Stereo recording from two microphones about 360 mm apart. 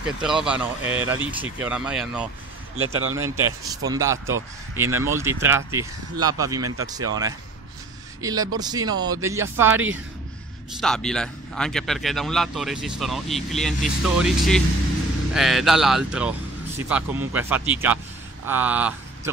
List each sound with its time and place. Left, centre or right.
0.0 s speech: centre
2.8 s speech: right
3.3 s speech: centre